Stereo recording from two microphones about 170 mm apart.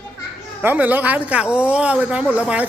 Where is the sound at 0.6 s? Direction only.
10° right (ahead or behind).